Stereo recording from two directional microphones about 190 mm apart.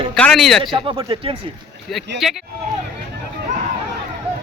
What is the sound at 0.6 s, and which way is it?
Speech, 25° right (ahead or behind).